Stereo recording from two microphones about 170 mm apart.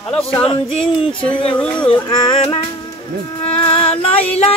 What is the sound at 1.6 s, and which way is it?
Speech, 5° left (ahead or behind).